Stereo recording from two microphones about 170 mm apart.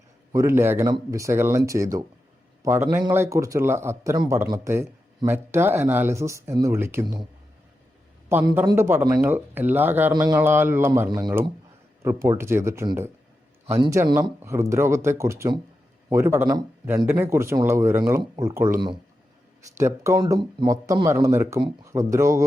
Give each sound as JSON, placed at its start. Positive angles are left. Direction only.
{"t": 0.3, "sound": "speech", "side_deg": -15}
{"t": 8.7, "sound": "speech", "side_deg": -15}
{"t": 10.1, "sound": "a man's voice", "side_deg": -25}
{"t": 10.3, "sound": "speech", "side_deg": -10}
{"t": 11.1, "sound": "a man's voice", "side_deg": -25}